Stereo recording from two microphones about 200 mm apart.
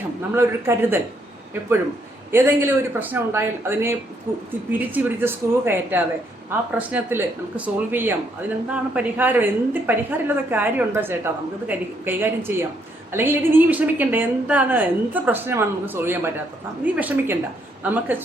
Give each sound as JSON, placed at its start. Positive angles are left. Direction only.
{"t": 0.3, "sound": "speech", "side_deg": -10}
{"t": 2.3, "sound": "speech", "side_deg": -10}